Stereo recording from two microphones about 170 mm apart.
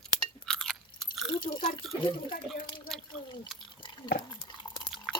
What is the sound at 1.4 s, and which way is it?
Speech, 25° left (ahead or behind).